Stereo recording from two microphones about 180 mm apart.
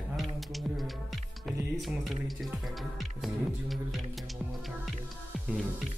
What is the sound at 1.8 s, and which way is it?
Music, centre (ahead or behind).